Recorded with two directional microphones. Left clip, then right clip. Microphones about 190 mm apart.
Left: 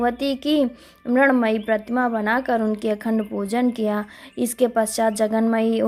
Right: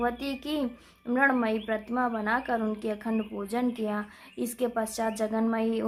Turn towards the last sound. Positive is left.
turn(degrees=40)  # may be behind; listen again after turning